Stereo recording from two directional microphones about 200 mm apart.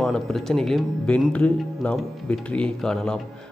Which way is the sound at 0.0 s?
Centre (ahead or behind).